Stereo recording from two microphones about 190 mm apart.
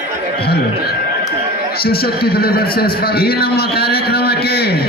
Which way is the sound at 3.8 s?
55° left (ahead or behind).